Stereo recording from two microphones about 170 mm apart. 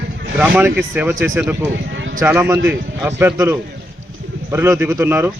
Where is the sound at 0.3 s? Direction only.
10° right (ahead or behind).